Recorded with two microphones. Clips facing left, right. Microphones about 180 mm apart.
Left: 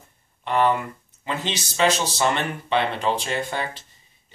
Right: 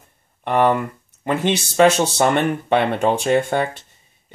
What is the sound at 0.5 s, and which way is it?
Speech, 55° right (ahead or behind).